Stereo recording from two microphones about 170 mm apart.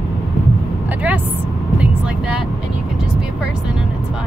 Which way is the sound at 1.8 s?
5° right (ahead or behind).